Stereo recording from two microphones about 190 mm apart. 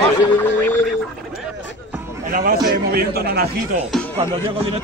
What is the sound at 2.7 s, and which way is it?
Speech, 50° right (ahead or behind).